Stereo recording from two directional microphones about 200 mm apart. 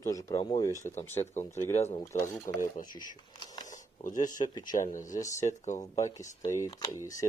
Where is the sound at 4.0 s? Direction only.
40° left (ahead or behind).